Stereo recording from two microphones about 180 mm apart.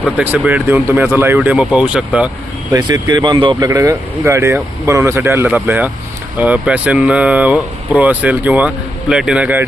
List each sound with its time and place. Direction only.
0.2 s speech: 10° right (ahead or behind)
2.7 s speech: 25° right (ahead or behind); by 9.6 s 10° right (ahead or behind)